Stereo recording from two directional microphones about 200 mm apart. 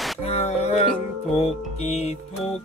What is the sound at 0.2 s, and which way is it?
Music, 30° left (ahead or behind).